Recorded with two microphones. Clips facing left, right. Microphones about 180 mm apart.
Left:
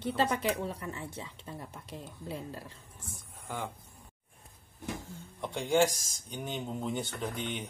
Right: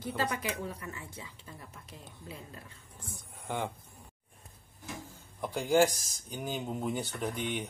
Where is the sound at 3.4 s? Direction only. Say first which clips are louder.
Right 3 dB; 10° right (ahead or behind).